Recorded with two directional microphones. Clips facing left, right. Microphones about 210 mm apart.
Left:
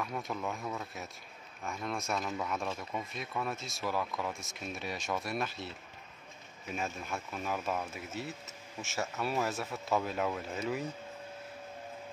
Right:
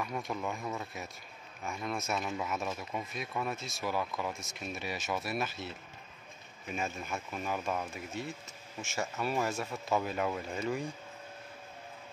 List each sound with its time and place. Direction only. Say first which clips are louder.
0.0 s speech: right 1 dB; centre (ahead or behind)
6.7 s speech: right 1 dB; centre (ahead or behind)